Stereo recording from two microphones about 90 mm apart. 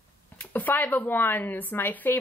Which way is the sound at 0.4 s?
20° left (ahead or behind).